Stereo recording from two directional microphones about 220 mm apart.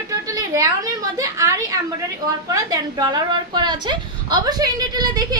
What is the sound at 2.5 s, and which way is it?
A woman's voice, 15° right (ahead or behind).